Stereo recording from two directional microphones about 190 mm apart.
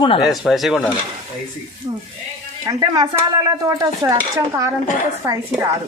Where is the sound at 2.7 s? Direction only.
20° right (ahead or behind).